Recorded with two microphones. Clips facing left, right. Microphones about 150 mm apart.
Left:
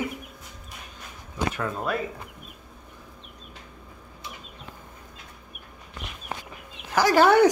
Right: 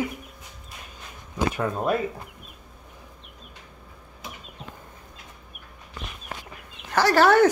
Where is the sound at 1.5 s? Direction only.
20° right (ahead or behind).